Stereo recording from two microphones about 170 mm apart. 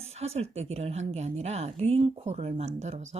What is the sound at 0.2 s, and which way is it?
Speech, 40° right (ahead or behind).